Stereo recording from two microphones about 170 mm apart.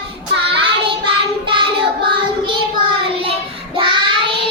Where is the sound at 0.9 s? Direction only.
30° right (ahead or behind).